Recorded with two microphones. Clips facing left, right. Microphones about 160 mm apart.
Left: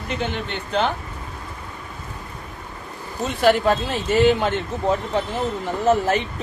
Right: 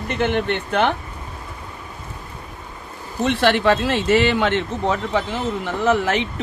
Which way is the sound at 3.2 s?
75° right (ahead or behind).